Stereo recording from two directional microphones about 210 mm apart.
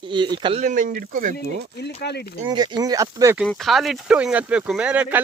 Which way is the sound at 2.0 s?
50° left (ahead or behind).